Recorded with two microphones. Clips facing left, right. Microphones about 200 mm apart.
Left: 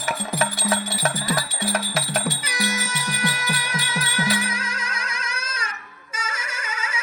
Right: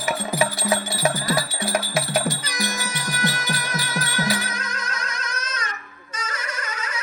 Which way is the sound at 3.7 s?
10° left (ahead or behind).